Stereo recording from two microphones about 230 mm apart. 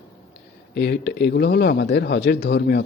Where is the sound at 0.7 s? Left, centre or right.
Left.